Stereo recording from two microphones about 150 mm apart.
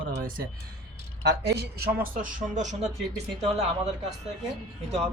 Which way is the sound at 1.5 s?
80° right.